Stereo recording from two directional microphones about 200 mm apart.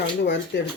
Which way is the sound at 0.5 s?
60° left (ahead or behind).